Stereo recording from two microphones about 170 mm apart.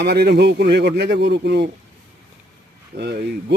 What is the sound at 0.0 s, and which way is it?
Speech, 75° right (ahead or behind).